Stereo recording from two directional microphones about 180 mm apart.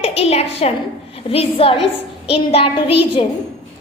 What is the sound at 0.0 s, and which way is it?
A woman's voice, 35° left (ahead or behind).